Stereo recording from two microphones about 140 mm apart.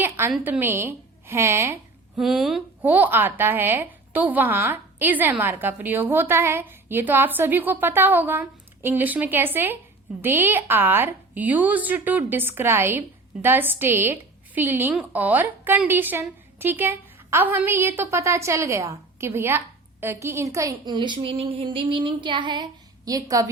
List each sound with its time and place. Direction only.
0.0 s a woman's voice: 15° right (ahead or behind)
2.1 s speech: centre (ahead or behind)
2.8 s a woman's voice: 10° right (ahead or behind)